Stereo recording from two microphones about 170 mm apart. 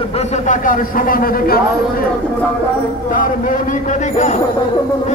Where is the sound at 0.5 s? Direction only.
50° left (ahead or behind).